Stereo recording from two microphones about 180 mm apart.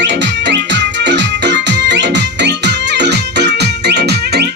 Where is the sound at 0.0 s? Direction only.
75° right (ahead or behind).